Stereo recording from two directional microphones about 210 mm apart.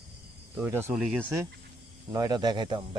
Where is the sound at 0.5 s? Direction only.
10° right (ahead or behind).